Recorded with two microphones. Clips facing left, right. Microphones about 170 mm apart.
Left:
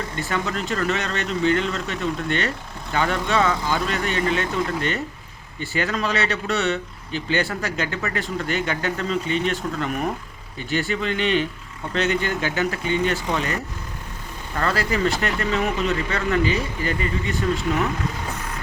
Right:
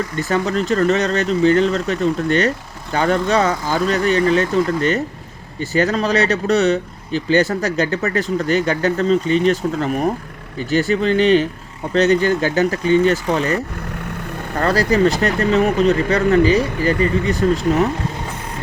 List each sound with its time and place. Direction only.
0.2 s speech: 40° right (ahead or behind)
14.5 s speech: 40° right (ahead or behind)